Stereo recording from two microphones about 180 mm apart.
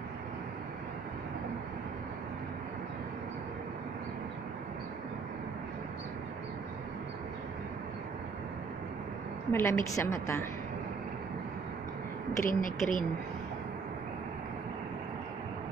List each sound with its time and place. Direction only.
9.5 s a woman's voice: 15° left (ahead or behind)
12.4 s a woman's voice: 50° left (ahead or behind)